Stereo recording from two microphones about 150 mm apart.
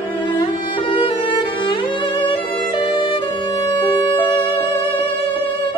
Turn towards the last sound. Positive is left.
turn(degrees=35)  # may be behind; listen again after turning